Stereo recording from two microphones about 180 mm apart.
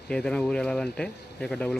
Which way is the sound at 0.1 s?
5° left (ahead or behind).